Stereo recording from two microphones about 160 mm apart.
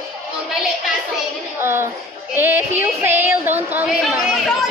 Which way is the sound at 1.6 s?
15° right (ahead or behind).